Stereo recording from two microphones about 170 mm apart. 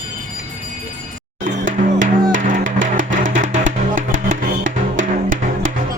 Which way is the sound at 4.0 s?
50° right (ahead or behind).